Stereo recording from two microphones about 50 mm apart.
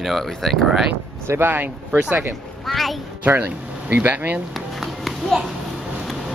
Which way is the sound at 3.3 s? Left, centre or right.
Right.